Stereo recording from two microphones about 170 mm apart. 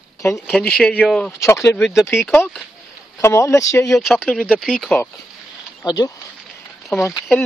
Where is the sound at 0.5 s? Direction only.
5° left (ahead or behind).